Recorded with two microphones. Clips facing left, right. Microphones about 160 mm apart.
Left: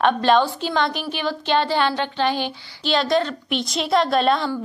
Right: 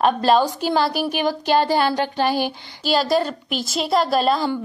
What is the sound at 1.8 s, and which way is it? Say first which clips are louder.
Speech: right 1 dB; 40° right (ahead or behind).